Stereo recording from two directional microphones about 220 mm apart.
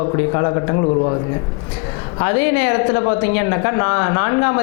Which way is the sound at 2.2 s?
20° left (ahead or behind).